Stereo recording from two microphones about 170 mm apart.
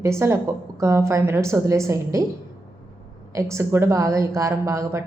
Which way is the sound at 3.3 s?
15° right (ahead or behind).